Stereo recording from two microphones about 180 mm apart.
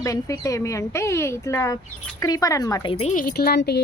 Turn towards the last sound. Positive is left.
turn(degrees=65)  # may be behind; listen again after turning